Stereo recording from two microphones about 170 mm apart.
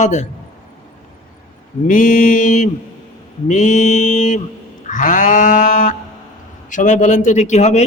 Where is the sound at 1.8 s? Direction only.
50° left (ahead or behind).